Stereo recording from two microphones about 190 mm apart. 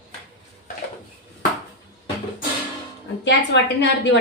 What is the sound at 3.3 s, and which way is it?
Speech, 65° left (ahead or behind).